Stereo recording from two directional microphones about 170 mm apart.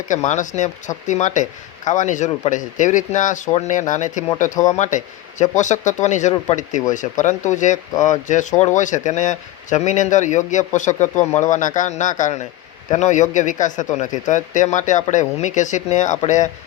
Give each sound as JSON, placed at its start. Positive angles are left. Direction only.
{"t": 0.1, "sound": "speech", "side_deg": 45}